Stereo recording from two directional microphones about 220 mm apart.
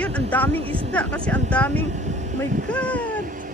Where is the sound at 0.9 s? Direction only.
5° left (ahead or behind).